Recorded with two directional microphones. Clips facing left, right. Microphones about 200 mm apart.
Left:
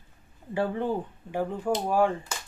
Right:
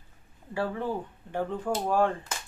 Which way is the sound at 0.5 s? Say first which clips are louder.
Left 3 dB; 20° left (ahead or behind).